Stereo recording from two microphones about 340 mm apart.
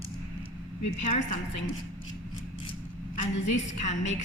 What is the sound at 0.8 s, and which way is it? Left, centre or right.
Speech, left.